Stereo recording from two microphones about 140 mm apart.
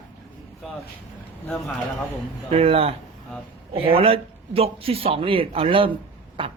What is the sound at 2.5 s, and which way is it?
Speech, 45° right (ahead or behind).